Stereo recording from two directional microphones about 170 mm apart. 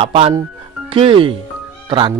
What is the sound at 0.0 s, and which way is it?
A man's voice, 35° right (ahead or behind).